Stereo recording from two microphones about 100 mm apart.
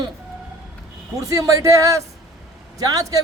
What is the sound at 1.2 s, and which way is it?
Speech, 35° right (ahead or behind).